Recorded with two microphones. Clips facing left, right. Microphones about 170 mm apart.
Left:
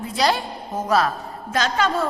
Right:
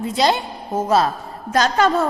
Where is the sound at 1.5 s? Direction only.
40° right (ahead or behind).